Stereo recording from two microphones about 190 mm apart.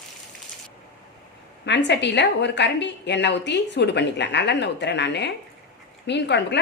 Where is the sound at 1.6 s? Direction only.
65° left (ahead or behind).